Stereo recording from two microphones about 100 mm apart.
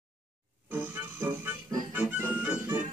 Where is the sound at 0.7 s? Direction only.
15° right (ahead or behind).